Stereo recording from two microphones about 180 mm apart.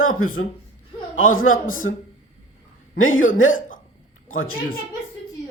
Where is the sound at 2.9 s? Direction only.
90° left.